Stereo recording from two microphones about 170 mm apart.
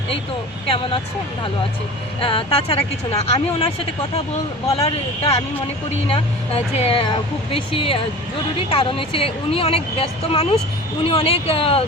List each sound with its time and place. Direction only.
0.7 s speech: 30° left (ahead or behind)
2.2 s speech: 30° left (ahead or behind)
4.9 s speech: 35° left (ahead or behind)